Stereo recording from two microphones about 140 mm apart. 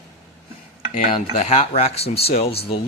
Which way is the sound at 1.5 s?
45° left (ahead or behind).